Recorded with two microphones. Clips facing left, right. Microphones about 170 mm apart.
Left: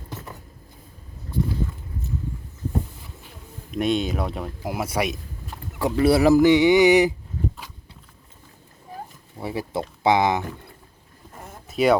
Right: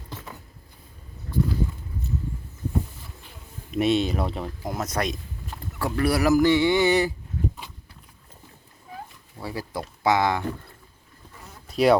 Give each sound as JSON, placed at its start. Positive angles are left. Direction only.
{"t": 3.2, "sound": "speech", "side_deg": 0}
{"t": 5.8, "sound": "speech", "side_deg": 25}
{"t": 6.4, "sound": "mantra", "side_deg": 15}
{"t": 9.4, "sound": "speech", "side_deg": 20}
{"t": 11.3, "sound": "vehicle", "side_deg": 50}
{"t": 11.7, "sound": "speech", "side_deg": 0}